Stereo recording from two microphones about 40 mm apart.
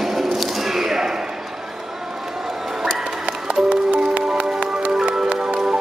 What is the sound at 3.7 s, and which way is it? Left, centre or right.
Music, right.